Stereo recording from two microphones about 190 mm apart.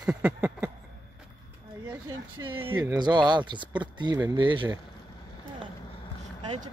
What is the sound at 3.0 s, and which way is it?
Speech, 25° right (ahead or behind).